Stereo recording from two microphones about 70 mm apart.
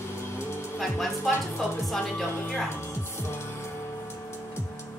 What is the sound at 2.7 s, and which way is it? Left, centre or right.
Music, left.